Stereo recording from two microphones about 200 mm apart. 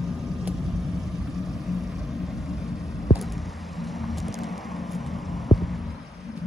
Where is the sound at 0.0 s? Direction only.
Centre (ahead or behind).